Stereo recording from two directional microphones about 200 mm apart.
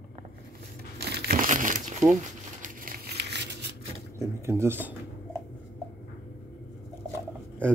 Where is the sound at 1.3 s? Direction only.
40° right (ahead or behind); by 3.6 s 60° right (ahead or behind).